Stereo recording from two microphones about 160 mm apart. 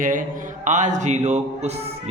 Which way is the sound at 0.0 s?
55° right (ahead or behind).